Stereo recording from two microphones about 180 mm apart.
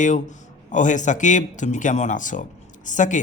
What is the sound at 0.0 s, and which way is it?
Speech, 45° left (ahead or behind).